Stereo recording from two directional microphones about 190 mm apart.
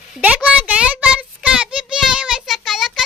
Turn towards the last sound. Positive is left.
turn(degrees=0)  # may be behind; listen again after turning